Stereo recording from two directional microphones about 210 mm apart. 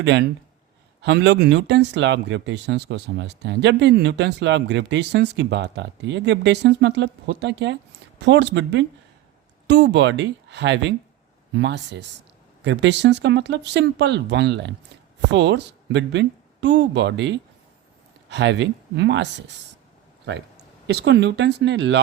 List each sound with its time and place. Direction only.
0.0 s speech: 55° right (ahead or behind)
20.8 s speech: 55° right (ahead or behind)